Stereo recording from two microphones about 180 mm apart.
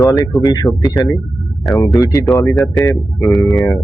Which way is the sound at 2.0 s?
20° left (ahead or behind).